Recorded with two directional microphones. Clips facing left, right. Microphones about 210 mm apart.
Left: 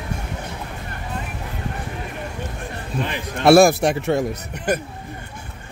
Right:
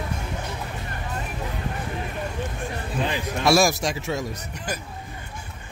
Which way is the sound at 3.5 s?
60° left (ahead or behind).